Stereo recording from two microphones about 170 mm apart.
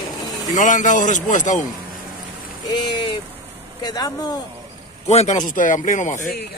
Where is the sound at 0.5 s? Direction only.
50° left (ahead or behind).